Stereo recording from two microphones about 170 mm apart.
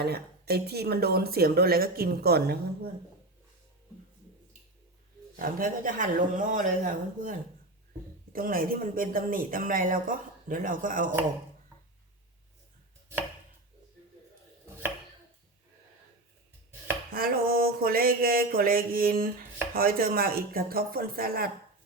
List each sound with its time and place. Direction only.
0.0 s a woman's voice: 70° right (ahead or behind)
5.4 s speech: 55° right (ahead or behind)
17.1 s a woman's voice: 60° right (ahead or behind)